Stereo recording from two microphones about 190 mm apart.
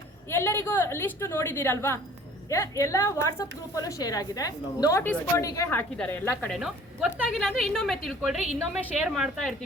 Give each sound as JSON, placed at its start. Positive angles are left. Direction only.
{"t": 0.3, "sound": "a woman's voice", "side_deg": 10}